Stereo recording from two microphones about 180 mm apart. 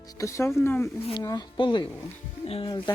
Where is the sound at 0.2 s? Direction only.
15° left (ahead or behind).